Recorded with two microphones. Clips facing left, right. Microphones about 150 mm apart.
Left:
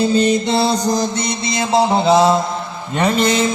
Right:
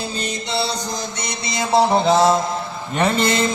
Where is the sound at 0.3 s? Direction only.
50° left (ahead or behind).